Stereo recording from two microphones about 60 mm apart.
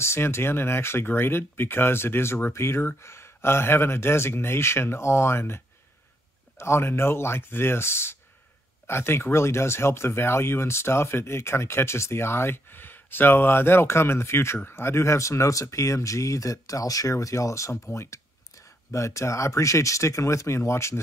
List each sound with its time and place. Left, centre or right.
0.0 s speech: left
6.6 s speech: left